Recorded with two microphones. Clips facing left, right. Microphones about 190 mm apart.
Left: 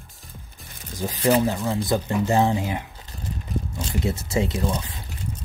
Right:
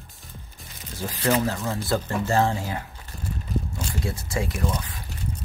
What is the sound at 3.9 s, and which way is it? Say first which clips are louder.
Speech: left 6 dB; 20° left (ahead or behind).